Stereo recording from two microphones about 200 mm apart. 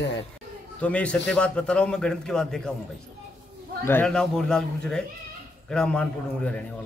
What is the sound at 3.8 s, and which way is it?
Speech, 5° left (ahead or behind).